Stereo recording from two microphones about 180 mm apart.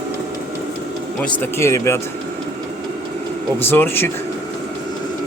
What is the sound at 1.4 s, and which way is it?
Speech, 15° left (ahead or behind).